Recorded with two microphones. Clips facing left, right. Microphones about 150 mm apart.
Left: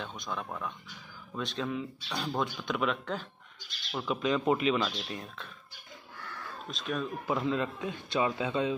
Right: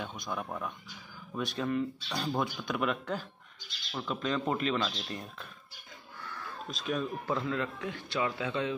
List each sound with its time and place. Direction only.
0.0 s speech: 5° right (ahead or behind)
3.9 s speech: 10° left (ahead or behind)
6.7 s speech: centre (ahead or behind)
7.2 s speech: 20° left (ahead or behind)